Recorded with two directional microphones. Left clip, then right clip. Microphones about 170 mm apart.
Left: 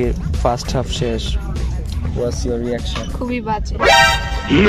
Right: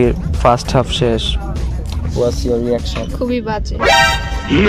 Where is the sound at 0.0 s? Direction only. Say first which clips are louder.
Right 6 dB; 10° right (ahead or behind).